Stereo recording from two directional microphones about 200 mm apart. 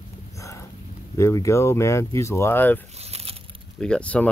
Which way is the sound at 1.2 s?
15° left (ahead or behind).